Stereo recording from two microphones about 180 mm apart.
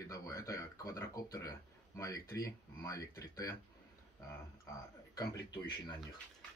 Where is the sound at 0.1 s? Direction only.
15° left (ahead or behind).